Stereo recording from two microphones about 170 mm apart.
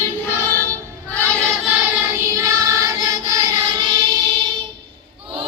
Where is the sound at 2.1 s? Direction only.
15° right (ahead or behind).